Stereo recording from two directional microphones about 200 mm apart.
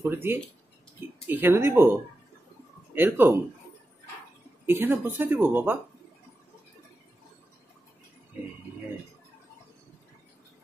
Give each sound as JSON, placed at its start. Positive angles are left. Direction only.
{"t": 0.0, "sound": "speech", "side_deg": -10}
{"t": 4.6, "sound": "speech", "side_deg": -10}